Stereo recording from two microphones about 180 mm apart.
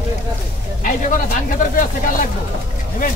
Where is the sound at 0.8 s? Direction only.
50° left (ahead or behind).